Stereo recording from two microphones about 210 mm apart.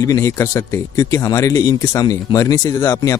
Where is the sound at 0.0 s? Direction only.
15° left (ahead or behind).